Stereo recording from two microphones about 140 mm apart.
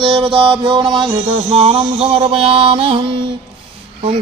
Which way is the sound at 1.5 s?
45° right (ahead or behind).